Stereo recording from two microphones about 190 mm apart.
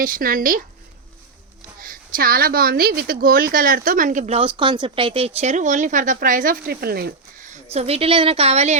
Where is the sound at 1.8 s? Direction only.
50° right (ahead or behind).